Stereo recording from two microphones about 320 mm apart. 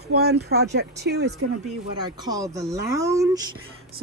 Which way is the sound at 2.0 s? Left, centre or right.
Centre.